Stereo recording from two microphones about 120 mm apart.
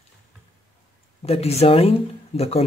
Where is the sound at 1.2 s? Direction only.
60° left (ahead or behind).